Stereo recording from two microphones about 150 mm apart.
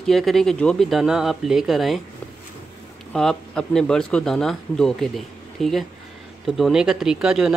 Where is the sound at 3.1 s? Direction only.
5° left (ahead or behind).